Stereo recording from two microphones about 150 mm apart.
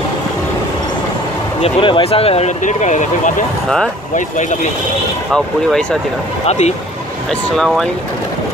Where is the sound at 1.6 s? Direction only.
35° left (ahead or behind); by 3.4 s 55° left (ahead or behind).